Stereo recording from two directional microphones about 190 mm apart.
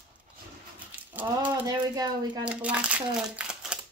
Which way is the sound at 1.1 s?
10° right (ahead or behind).